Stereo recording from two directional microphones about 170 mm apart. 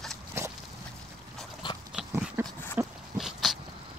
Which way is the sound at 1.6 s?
25° left (ahead or behind).